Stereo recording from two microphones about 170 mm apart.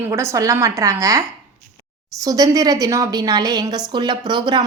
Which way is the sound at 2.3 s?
20° right (ahead or behind).